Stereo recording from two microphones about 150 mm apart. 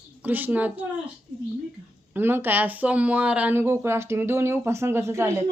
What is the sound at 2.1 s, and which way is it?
Speech, 15° right (ahead or behind).